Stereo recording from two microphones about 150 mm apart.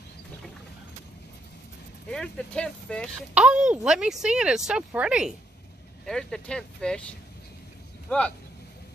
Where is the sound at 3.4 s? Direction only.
5° right (ahead or behind).